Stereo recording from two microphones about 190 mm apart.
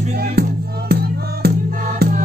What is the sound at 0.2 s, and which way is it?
Music, 55° right (ahead or behind).